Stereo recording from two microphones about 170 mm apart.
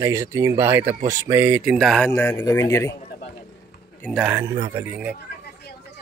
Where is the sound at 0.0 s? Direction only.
15° right (ahead or behind); by 2.0 s centre (ahead or behind).